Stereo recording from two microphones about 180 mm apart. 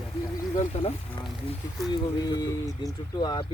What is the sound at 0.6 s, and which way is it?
Speech, 30° left (ahead or behind).